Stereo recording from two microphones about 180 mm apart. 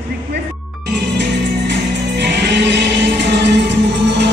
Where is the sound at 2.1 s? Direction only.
70° right (ahead or behind).